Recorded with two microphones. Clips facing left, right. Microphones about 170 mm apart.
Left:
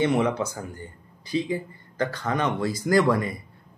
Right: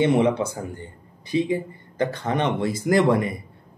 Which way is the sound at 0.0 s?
25° right (ahead or behind).